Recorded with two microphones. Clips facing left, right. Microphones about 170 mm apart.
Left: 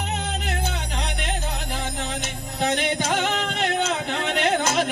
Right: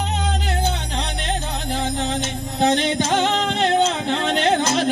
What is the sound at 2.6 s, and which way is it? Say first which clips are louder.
Music: right 5 dB; 30° right (ahead or behind).